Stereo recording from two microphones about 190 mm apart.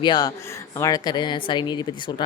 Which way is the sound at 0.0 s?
20° left (ahead or behind).